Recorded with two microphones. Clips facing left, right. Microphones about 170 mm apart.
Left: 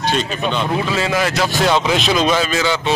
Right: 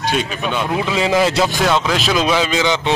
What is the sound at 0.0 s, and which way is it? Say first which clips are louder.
A man's voice: left 1 dB; 10° right (ahead or behind).